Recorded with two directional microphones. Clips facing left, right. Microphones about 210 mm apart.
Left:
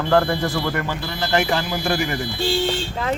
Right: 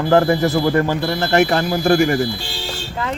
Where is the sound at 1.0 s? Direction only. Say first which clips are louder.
Right 6 dB; 60° right (ahead or behind).